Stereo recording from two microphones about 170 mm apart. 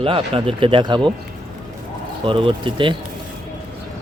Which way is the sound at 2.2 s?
30° right (ahead or behind).